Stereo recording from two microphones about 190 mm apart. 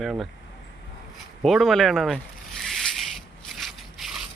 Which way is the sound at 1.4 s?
Centre (ahead or behind).